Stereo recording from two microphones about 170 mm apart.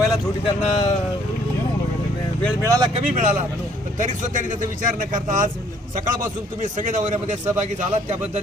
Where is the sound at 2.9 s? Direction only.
45° right (ahead or behind).